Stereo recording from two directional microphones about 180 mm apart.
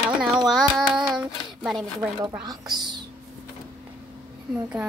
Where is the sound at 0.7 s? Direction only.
5° right (ahead or behind).